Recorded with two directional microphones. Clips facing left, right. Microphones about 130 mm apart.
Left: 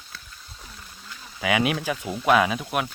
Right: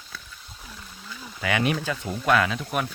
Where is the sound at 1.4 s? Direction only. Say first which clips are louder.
Left 2 dB; 10° left (ahead or behind).